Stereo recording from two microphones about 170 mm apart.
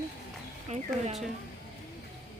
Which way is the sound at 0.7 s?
40° right (ahead or behind).